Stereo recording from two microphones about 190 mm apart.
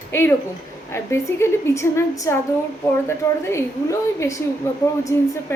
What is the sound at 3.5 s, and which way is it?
A woman's voice, 15° left (ahead or behind).